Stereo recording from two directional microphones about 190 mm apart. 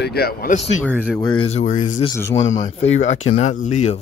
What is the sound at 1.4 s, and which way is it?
Speech, 40° left (ahead or behind).